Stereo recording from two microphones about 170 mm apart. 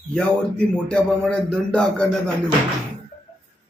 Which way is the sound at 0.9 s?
5° left (ahead or behind).